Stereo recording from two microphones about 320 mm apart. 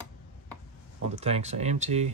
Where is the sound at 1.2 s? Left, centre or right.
Centre.